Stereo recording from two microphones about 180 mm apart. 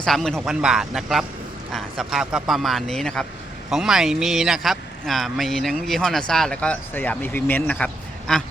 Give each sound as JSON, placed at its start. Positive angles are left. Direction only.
{"t": 0.0, "sound": "speech", "side_deg": 0}